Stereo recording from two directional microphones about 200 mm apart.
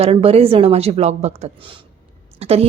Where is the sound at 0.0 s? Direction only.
30° right (ahead or behind).